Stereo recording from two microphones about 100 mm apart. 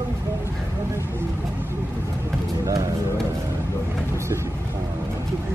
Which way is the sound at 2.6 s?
35° right (ahead or behind).